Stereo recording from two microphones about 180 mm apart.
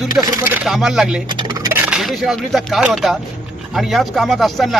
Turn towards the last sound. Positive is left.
turn(degrees=0)  # may be behind; listen again after turning